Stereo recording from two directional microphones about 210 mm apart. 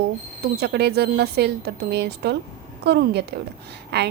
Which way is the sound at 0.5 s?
50° right (ahead or behind).